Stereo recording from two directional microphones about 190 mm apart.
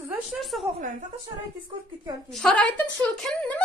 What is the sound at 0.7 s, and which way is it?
Speech, 45° right (ahead or behind).